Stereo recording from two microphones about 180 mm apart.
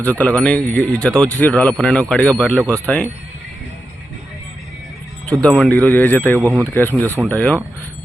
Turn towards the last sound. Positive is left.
turn(degrees=5)  # may be behind; listen again after turning